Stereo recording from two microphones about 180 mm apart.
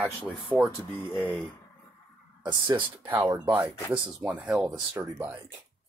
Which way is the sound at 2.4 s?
25° right (ahead or behind).